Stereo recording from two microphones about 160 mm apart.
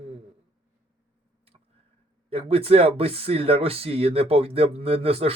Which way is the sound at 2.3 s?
35° right (ahead or behind).